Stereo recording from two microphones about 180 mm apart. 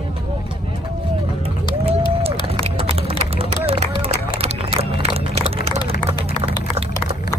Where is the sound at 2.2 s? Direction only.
35° right (ahead or behind).